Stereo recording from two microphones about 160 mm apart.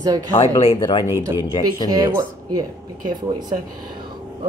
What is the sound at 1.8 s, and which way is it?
Speech, 30° left (ahead or behind).